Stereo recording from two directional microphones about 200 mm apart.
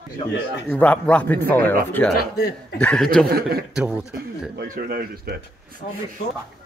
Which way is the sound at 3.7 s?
5° right (ahead or behind).